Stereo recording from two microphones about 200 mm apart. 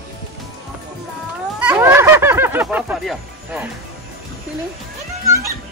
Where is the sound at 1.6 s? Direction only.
10° right (ahead or behind).